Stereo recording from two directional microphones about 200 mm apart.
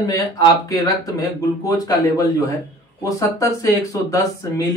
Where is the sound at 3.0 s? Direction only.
15° left (ahead or behind).